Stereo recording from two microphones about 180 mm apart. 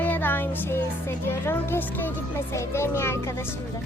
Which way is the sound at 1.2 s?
15° left (ahead or behind).